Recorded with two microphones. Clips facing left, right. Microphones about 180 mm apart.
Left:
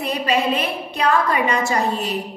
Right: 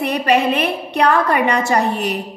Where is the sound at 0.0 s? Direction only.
65° right (ahead or behind).